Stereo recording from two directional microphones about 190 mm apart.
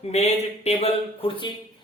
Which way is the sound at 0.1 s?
35° left (ahead or behind).